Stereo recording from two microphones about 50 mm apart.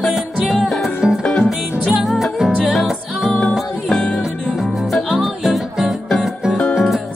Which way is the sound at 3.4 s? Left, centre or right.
Centre.